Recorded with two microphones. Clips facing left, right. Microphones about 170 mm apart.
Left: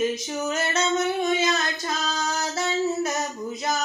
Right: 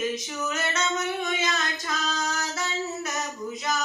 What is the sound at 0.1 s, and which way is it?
Singing, 30° left (ahead or behind).